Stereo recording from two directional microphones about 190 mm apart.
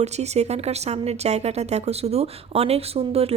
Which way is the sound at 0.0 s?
35° right (ahead or behind).